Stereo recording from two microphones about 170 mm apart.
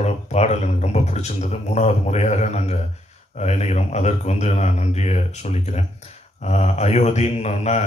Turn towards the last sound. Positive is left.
turn(degrees=40)  # may be behind; listen again after turning